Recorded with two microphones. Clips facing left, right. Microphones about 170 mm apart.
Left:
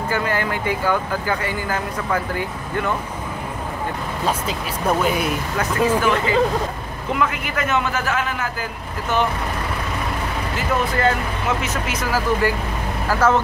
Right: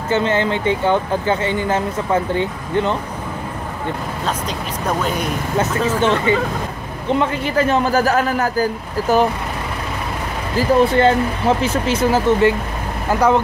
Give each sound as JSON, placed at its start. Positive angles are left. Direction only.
{"t": 0.1, "sound": "speech", "side_deg": -25}
{"t": 4.5, "sound": "speech", "side_deg": 10}
{"t": 5.9, "sound": "a man's voice", "side_deg": -25}
{"t": 10.5, "sound": "speech", "side_deg": -35}